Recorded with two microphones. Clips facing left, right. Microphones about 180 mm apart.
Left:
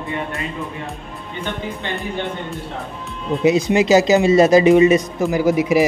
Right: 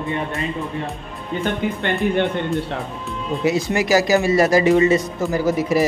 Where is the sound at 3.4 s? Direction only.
20° left (ahead or behind).